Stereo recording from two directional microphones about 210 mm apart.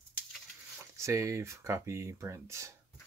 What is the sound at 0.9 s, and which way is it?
Speech, 15° right (ahead or behind).